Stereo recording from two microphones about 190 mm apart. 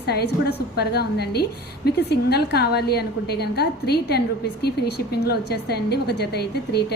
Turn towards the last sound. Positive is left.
turn(degrees=60)  # may be behind; listen again after turning